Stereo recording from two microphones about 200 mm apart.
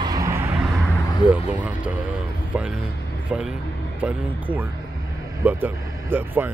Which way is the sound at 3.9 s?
10° right (ahead or behind).